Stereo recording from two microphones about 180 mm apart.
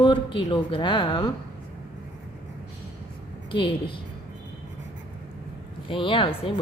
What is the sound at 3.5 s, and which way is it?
Speech, 25° left (ahead or behind).